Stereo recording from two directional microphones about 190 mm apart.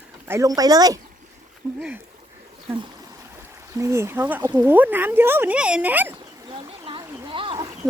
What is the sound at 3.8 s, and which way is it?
Speech, 15° right (ahead or behind).